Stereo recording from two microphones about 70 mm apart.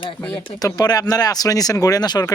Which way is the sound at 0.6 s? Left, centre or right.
Left.